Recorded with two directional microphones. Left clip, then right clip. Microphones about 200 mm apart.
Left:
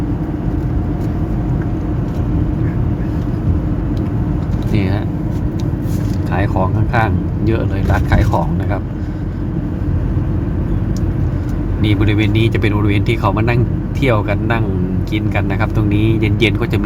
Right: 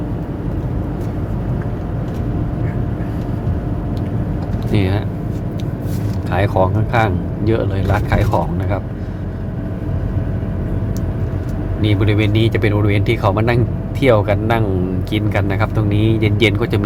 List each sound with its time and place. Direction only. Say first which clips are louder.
6.3 s speech: right 3 dB; 10° right (ahead or behind)
11.8 s speech: left 1 dB; 5° right (ahead or behind)